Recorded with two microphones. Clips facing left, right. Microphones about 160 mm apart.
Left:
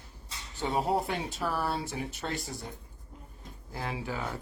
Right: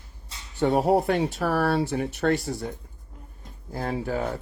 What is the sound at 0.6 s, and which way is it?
Speech, 60° right (ahead or behind).